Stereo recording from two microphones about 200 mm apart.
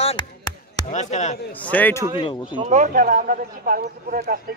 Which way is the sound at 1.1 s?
35° left (ahead or behind).